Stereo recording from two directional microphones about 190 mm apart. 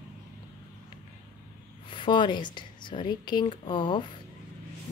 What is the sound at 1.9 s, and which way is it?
Speech, 25° left (ahead or behind).